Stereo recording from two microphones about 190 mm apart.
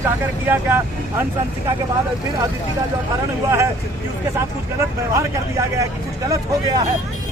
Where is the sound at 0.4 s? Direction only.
10° right (ahead or behind).